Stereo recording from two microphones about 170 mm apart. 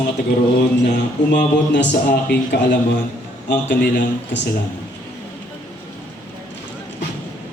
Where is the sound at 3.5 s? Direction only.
90° left.